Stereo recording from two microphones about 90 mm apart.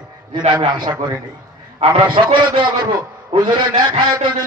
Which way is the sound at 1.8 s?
70° right (ahead or behind).